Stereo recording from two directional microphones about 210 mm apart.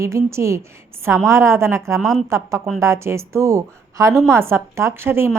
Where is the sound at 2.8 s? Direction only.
15° right (ahead or behind).